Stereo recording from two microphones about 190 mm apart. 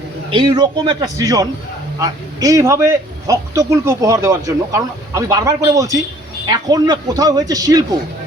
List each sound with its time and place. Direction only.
0.3 s a man's voice: 25° right (ahead or behind)